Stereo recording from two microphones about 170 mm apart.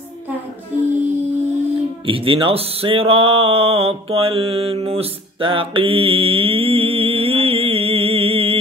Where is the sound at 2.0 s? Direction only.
30° right (ahead or behind).